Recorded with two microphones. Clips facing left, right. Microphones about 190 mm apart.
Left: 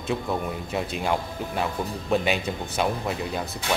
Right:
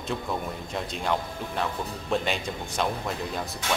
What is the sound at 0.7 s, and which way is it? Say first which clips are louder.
Speech: left 2 dB; 10° left (ahead or behind).